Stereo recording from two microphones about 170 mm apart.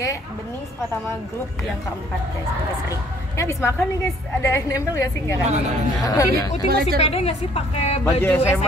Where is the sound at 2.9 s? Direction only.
20° left (ahead or behind).